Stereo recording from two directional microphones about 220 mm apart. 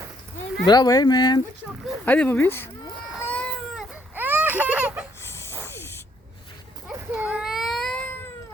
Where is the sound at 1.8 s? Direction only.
5° left (ahead or behind).